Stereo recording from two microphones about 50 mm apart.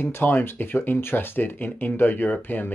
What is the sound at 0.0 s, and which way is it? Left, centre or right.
Speech, left.